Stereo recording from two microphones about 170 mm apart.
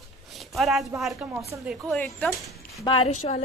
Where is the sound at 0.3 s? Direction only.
Centre (ahead or behind).